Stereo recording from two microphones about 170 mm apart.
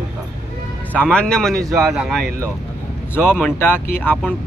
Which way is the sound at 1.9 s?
5° right (ahead or behind).